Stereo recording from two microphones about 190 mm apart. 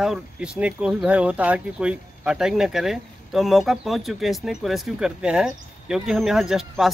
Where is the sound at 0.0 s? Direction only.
5° right (ahead or behind).